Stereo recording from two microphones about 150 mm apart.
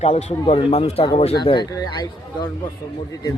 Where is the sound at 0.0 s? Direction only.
45° left (ahead or behind).